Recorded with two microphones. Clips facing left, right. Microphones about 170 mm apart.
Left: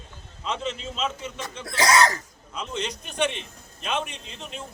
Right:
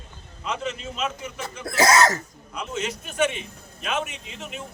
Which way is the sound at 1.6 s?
40° right (ahead or behind).